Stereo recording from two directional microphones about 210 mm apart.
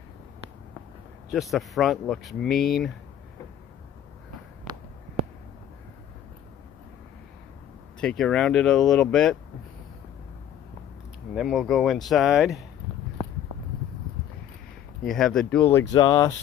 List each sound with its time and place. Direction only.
1.3 s speech: centre (ahead or behind)
8.0 s speech: 5° left (ahead or behind)
11.3 s speech: centre (ahead or behind)
15.0 s speech: centre (ahead or behind)
15.9 s speech: 20° left (ahead or behind)